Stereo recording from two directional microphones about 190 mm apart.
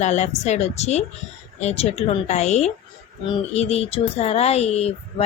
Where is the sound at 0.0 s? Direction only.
40° left (ahead or behind).